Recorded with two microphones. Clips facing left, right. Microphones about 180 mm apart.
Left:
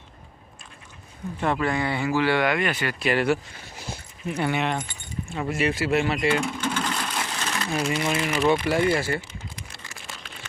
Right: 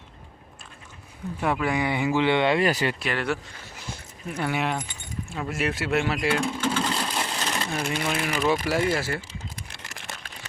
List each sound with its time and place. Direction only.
1.4 s speech: 5° right (ahead or behind); by 2.9 s 35° right (ahead or behind)
3.0 s speech: 5° left (ahead or behind)
6.4 s vehicle: 10° right (ahead or behind)
7.0 s crumpling: 10° right (ahead or behind)
8.0 s speech: centre (ahead or behind)